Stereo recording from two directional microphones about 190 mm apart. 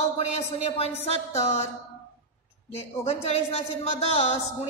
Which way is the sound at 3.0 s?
35° left (ahead or behind).